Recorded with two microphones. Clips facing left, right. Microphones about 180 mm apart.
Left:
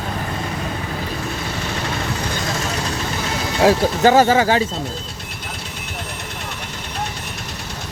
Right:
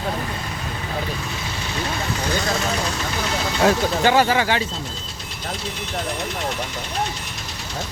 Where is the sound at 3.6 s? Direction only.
40° left (ahead or behind).